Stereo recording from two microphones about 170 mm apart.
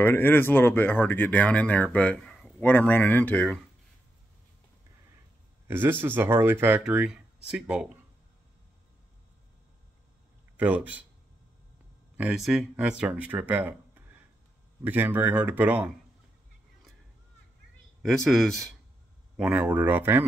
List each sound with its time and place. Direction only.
0.0 s speech: 10° left (ahead or behind)
5.7 s speech: 10° right (ahead or behind)
10.6 s speech: 10° right (ahead or behind)
12.2 s speech: centre (ahead or behind)
18.0 s speech: centre (ahead or behind)